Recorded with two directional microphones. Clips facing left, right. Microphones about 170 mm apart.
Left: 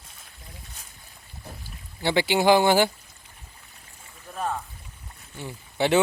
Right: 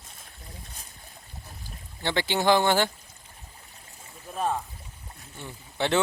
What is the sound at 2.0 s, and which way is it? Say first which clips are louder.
Speech: left 4 dB; 10° left (ahead or behind).